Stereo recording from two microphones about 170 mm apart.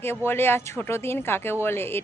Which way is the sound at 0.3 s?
15° left (ahead or behind).